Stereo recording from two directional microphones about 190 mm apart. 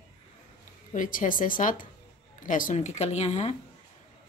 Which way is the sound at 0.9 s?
45° left (ahead or behind).